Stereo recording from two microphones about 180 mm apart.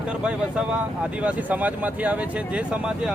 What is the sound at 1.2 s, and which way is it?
Speech, 10° right (ahead or behind).